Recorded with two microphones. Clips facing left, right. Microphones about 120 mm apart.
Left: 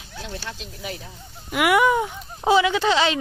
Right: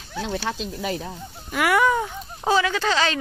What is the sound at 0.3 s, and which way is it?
Speech, 90° right.